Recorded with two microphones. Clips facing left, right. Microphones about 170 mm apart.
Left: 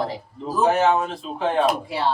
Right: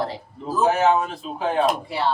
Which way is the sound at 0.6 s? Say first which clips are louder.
Even; centre (ahead or behind).